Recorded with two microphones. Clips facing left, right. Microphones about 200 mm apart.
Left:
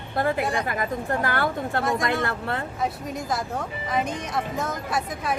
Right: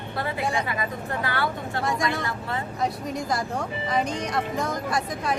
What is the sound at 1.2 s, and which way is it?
Speech, 50° left (ahead or behind).